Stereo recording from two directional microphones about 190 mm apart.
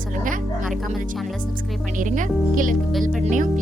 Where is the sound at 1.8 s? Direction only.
45° right (ahead or behind).